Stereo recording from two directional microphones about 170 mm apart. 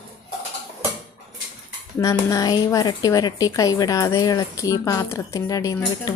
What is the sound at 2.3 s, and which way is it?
A woman's voice, 20° left (ahead or behind).